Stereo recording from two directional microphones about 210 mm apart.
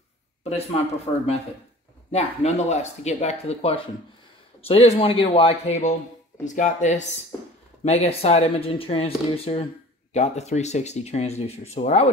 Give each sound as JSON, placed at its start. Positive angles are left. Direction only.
{"t": 0.4, "sound": "a man's voice", "side_deg": 30}
{"t": 2.1, "sound": "speech", "side_deg": 30}